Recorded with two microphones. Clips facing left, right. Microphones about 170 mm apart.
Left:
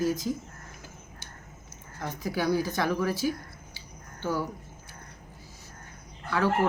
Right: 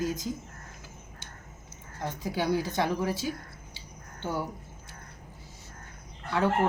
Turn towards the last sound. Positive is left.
turn(degrees=-25)  # may be behind; listen again after turning